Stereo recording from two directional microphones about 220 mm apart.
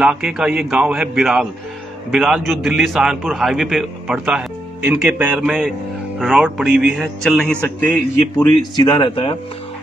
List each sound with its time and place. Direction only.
0.0 s a man's voice: 5° right (ahead or behind)
8.7 s a man's voice: 20° left (ahead or behind)